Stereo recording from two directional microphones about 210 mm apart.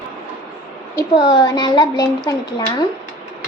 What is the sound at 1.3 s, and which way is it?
Speech, 20° left (ahead or behind).